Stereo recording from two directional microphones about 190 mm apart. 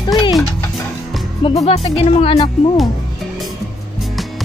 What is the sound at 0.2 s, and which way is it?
Music, 20° left (ahead or behind).